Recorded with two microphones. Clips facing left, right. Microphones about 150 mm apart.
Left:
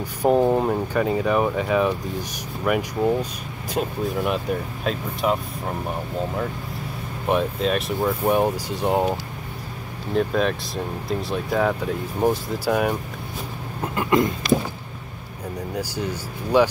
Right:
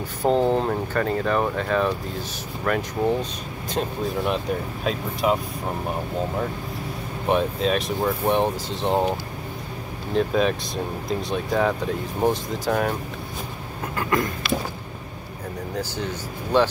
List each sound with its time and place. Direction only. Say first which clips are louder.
0.2 s speech: left 2 dB; 10° left (ahead or behind)
7.2 s speech: even; centre (ahead or behind)
13.9 s a sound: left 4 dB; 20° left (ahead or behind)
15.7 s speech: left 1 dB; 10° left (ahead or behind)